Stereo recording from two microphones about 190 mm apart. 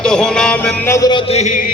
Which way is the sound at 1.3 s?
40° left (ahead or behind).